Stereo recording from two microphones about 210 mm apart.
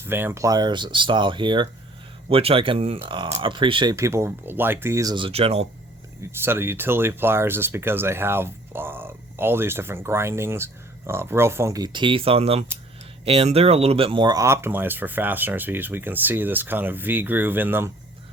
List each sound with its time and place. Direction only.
0.0 s speech: 10° right (ahead or behind); by 5.6 s 30° right (ahead or behind)
6.3 s speech: 10° right (ahead or behind)